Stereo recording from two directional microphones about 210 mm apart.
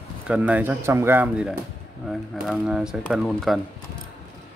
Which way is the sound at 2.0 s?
Centre (ahead or behind).